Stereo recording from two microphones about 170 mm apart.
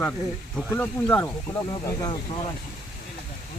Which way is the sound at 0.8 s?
10° left (ahead or behind).